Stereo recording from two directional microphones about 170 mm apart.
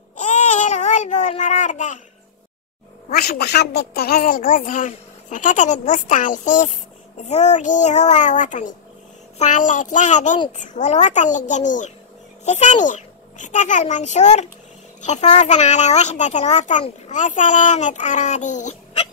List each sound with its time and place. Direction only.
0.2 s baby cry: 45° left (ahead or behind)
3.1 s a child's voice: 65° left (ahead or behind); by 19.0 s 45° left (ahead or behind)